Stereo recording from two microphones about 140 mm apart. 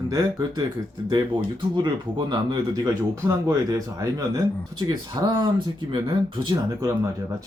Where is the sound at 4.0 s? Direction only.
25° right (ahead or behind).